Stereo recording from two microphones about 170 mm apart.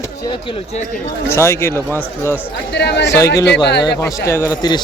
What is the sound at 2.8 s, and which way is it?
Speech, 85° left.